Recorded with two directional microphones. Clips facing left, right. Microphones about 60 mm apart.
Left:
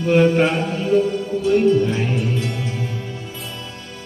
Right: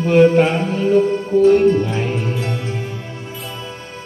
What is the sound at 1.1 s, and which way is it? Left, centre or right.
Music, right.